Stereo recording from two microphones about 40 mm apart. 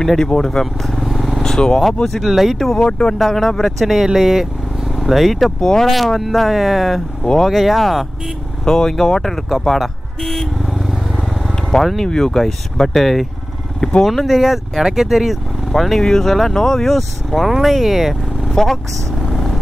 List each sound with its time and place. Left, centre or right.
0.3 s speech: centre
1.0 s vehicle: centre
1.5 s speech: centre
2.2 s speech: centre
2.8 s speech: centre
3.2 s speech: centre
3.8 s speech: centre
5.6 s speech: centre
5.9 s speech: centre
8.6 s speech: centre
11.8 s speech: centre
15.7 s speech: centre
18.5 s speech: centre